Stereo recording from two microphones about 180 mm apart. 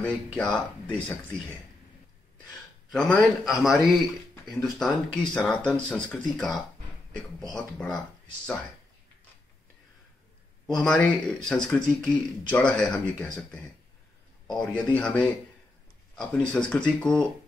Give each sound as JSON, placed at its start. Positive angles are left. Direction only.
{"t": 0.0, "sound": "speech", "side_deg": 0}
{"t": 2.9, "sound": "speech", "side_deg": 5}
{"t": 10.7, "sound": "speech", "side_deg": 5}